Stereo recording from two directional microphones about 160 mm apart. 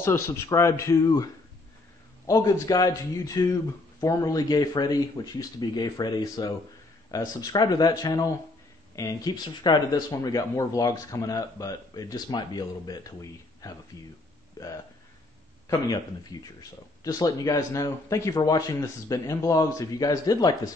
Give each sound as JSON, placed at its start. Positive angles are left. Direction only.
{"t": 0.0, "sound": "speech", "side_deg": 20}
{"t": 17.0, "sound": "speech", "side_deg": 20}